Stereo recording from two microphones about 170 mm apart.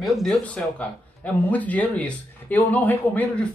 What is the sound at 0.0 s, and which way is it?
A man's voice, centre (ahead or behind).